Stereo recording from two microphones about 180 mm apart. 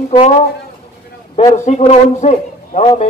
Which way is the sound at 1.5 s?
40° left (ahead or behind).